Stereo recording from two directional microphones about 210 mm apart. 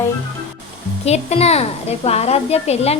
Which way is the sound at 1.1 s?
30° left (ahead or behind).